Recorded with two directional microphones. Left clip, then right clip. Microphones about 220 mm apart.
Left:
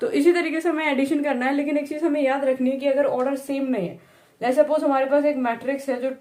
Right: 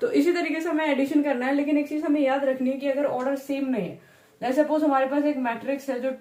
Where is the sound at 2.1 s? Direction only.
55° left (ahead or behind).